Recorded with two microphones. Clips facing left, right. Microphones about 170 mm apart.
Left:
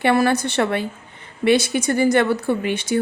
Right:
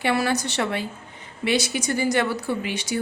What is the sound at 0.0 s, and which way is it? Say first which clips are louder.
Speech: left 5 dB; 55° left (ahead or behind).